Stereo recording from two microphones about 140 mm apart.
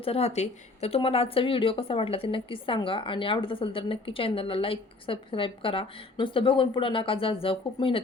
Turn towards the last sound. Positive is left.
turn(degrees=40)  # may be behind; listen again after turning